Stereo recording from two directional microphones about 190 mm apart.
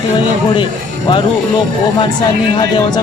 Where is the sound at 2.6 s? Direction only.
25° left (ahead or behind).